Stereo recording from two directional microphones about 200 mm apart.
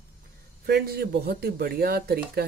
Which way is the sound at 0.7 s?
50° right (ahead or behind).